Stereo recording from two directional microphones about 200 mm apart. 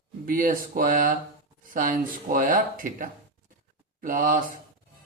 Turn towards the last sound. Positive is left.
turn(degrees=-45)  # may be behind; listen again after turning